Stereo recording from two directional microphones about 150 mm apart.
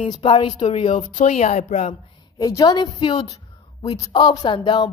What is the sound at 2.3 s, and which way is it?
A woman's voice, 25° left (ahead or behind).